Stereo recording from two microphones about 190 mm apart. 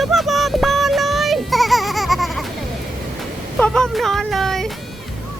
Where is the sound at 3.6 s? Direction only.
5° left (ahead or behind).